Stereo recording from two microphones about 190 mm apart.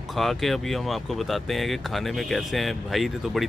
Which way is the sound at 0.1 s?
Centre (ahead or behind).